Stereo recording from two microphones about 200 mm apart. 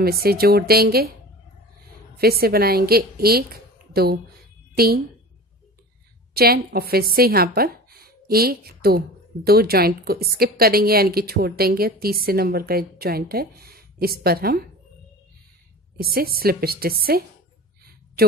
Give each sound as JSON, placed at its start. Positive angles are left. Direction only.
{"t": 0.0, "sound": "a woman's voice", "side_deg": -50}
{"t": 2.1, "sound": "a woman's voice", "side_deg": -50}
{"t": 6.3, "sound": "a woman's voice", "side_deg": -50}
{"t": 16.0, "sound": "a woman's voice", "side_deg": -50}